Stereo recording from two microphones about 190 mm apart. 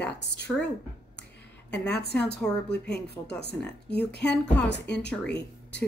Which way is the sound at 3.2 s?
15° left (ahead or behind).